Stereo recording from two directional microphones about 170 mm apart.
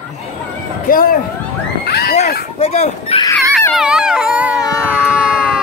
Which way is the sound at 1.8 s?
70° left (ahead or behind).